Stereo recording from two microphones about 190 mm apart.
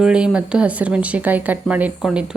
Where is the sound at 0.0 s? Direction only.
5° right (ahead or behind).